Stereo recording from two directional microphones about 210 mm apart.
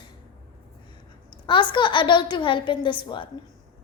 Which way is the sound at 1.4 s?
25° left (ahead or behind).